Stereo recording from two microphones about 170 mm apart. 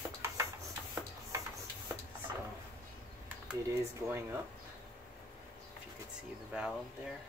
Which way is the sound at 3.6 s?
15° right (ahead or behind).